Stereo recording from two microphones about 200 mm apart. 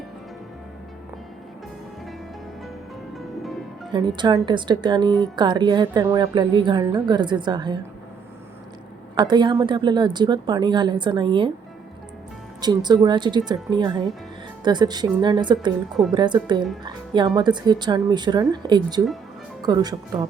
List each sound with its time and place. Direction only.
3.9 s a woman's voice: 20° right (ahead or behind)
9.1 s a woman's voice: 20° right (ahead or behind)
12.6 s a woman's voice: 20° right (ahead or behind)